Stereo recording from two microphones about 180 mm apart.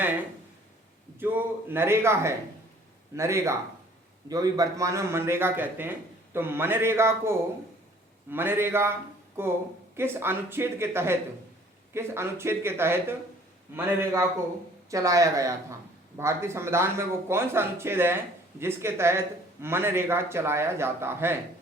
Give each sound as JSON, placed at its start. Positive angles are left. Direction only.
{"t": 1.2, "sound": "a man's voice", "side_deg": -10}